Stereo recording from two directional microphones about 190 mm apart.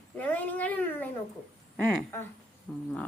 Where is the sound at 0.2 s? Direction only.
10° left (ahead or behind).